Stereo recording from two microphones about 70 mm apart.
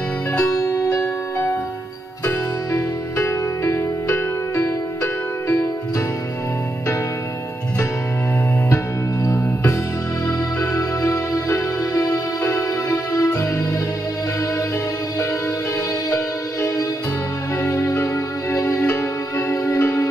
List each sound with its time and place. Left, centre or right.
0.4 s music: left
2.2 s music: left
8.6 s music: left
10.7 s music: left
17.6 s music: left